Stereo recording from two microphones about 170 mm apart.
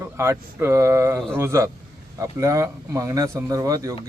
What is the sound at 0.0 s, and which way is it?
Speech, 15° right (ahead or behind).